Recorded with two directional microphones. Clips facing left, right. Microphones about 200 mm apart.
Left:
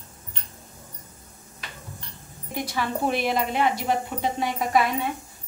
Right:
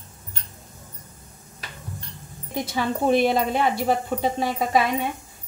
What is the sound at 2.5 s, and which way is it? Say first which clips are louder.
Speech: right 2 dB; 25° right (ahead or behind).